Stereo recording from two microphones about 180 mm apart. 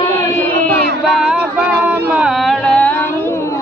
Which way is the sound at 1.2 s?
5° right (ahead or behind).